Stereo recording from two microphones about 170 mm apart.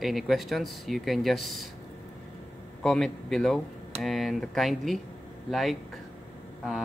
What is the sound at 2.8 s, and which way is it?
Speech, centre (ahead or behind).